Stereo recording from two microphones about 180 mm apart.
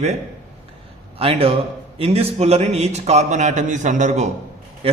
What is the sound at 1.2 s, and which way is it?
A man's voice, 35° right (ahead or behind).